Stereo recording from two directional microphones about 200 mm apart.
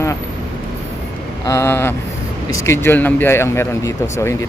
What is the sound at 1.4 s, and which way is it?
Speech, 15° left (ahead or behind).